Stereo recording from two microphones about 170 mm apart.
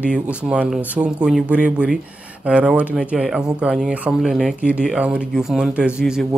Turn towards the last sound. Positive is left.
turn(degrees=-5)  # may be behind; listen again after turning